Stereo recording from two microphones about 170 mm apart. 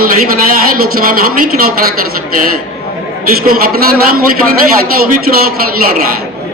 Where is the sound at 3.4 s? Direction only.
55° right (ahead or behind).